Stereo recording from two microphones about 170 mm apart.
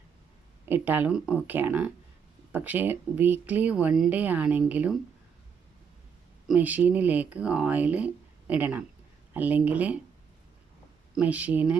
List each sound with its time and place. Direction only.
0.6 s speech: 10° right (ahead or behind)
6.5 s speech: 10° right (ahead or behind)
11.2 s speech: 10° right (ahead or behind)